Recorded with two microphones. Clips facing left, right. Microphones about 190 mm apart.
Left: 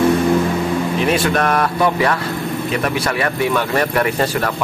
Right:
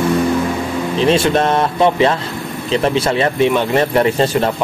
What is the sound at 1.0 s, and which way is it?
A man's voice, 25° right (ahead or behind).